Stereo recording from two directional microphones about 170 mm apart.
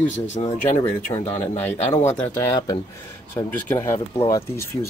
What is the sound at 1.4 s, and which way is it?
Speech, 10° left (ahead or behind).